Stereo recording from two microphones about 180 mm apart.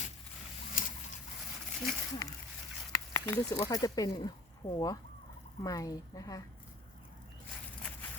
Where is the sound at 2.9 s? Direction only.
15° left (ahead or behind).